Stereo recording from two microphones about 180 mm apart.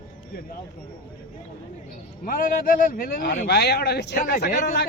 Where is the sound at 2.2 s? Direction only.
50° left (ahead or behind).